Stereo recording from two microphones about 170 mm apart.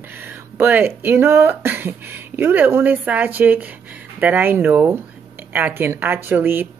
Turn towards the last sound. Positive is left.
turn(degrees=-10)  # may be behind; listen again after turning